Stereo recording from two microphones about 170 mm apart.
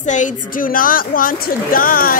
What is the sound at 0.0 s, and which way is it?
A woman's voice, 45° left (ahead or behind).